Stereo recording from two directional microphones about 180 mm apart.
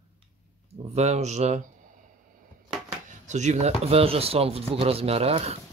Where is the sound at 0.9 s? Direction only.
40° right (ahead or behind).